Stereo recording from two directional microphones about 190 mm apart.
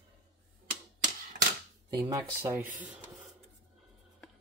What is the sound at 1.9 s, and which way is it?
Speech, 20° right (ahead or behind).